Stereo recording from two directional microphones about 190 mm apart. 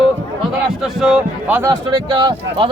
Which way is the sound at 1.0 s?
Centre (ahead or behind).